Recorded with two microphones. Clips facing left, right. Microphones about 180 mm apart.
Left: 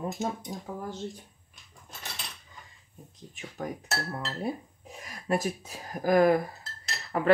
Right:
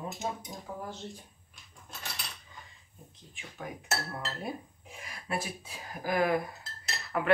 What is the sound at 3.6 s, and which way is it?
Speech, 45° left (ahead or behind).